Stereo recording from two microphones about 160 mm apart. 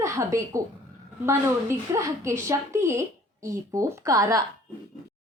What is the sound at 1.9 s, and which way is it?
Speech, 20° right (ahead or behind).